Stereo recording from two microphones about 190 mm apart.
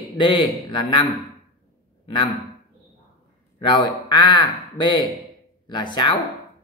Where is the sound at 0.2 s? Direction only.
25° left (ahead or behind).